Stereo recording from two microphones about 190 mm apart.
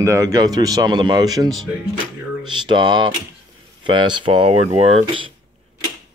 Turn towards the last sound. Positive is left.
turn(degrees=-35)  # may be behind; listen again after turning